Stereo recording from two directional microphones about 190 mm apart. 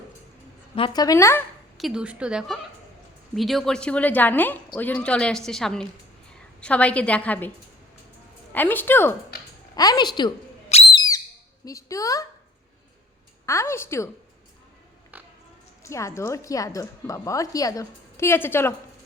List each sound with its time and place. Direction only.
0.8 s a woman's voice: 20° left (ahead or behind)
1.8 s a woman's voice: 5° right (ahead or behind)
8.5 s a woman's voice: 10° left (ahead or behind)
10.9 s whistle: 20° left (ahead or behind)
11.6 s a woman's voice: 15° left (ahead or behind)
13.4 s a woman's voice: 15° left (ahead or behind)
15.1 s oink: 10° right (ahead or behind)
15.8 s a woman's voice: 15° left (ahead or behind)